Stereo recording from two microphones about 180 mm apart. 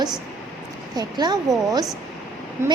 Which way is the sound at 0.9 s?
25° right (ahead or behind).